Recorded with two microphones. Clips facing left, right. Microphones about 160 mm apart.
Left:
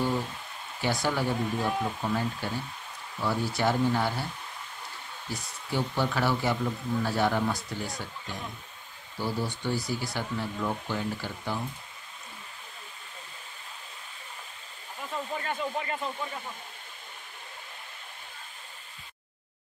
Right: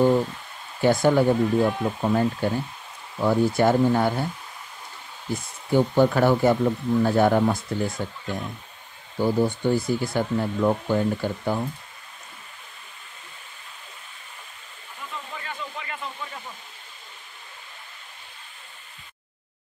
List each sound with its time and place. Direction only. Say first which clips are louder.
0.7 s speech: right 10 dB; 50° right (ahead or behind)
5.3 s speech: right 10 dB; 50° right (ahead or behind)
15.3 s a sound: left 6 dB; 40° left (ahead or behind)